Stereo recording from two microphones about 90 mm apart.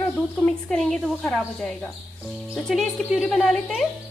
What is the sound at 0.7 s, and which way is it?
Speech, 5° left (ahead or behind).